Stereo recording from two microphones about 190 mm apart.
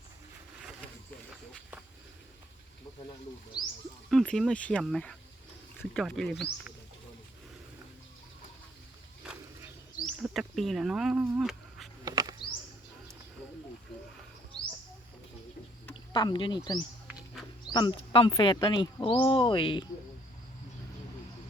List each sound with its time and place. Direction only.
3.5 s a sound: 20° left (ahead or behind)
4.1 s speech: centre (ahead or behind)
9.2 s a sound: 5° right (ahead or behind)
10.1 s speech: 5° right (ahead or behind)
12.0 s bird: 20° right (ahead or behind)
16.1 s speech: 25° left (ahead or behind)
17.7 s speech: 25° left (ahead or behind)